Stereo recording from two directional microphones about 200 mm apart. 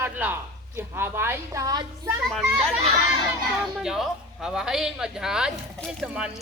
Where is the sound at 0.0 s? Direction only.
10° right (ahead or behind).